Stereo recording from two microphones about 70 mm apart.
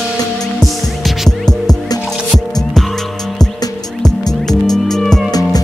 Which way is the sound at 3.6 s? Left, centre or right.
Left.